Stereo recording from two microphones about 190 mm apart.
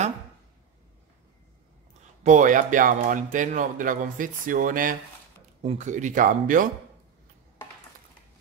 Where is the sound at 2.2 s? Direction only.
40° right (ahead or behind).